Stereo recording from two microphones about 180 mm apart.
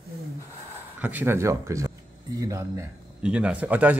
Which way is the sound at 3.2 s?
5° right (ahead or behind).